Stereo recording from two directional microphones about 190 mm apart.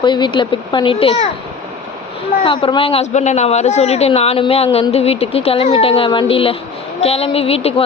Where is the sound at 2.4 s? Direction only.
25° left (ahead or behind).